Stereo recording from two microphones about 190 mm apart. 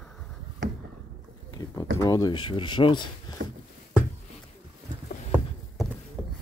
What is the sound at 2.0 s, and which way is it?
Speech, 20° left (ahead or behind).